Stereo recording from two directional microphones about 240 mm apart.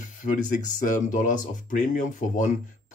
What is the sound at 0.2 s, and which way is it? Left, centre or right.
Speech, left.